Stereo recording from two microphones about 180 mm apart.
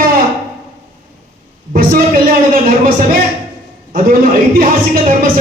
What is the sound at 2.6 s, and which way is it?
Speech, 50° right (ahead or behind).